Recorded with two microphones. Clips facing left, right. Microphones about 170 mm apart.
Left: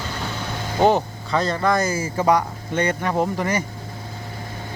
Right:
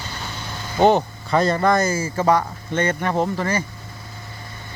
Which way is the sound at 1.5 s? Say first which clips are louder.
Right 1 dB; 5° left (ahead or behind).